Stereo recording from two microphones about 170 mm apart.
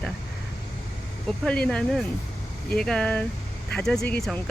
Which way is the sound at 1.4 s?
5° left (ahead or behind).